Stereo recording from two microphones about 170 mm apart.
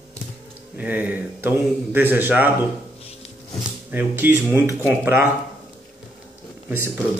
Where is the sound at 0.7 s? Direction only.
10° right (ahead or behind).